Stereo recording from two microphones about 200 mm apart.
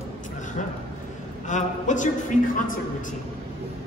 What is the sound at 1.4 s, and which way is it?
Speech, 40° left (ahead or behind).